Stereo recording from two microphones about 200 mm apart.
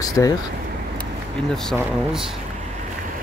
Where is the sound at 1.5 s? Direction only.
Centre (ahead or behind).